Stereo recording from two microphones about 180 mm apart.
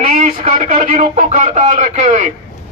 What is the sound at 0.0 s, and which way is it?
Radio, 50° right (ahead or behind).